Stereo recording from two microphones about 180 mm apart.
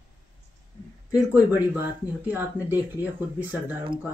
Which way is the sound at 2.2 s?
10° right (ahead or behind).